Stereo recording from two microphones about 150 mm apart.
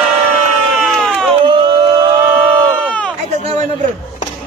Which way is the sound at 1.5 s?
30° right (ahead or behind).